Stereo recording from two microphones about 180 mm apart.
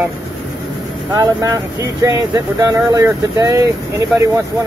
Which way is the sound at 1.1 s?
20° right (ahead or behind).